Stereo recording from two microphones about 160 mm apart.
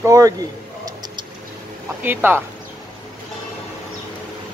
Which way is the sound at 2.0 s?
15° right (ahead or behind).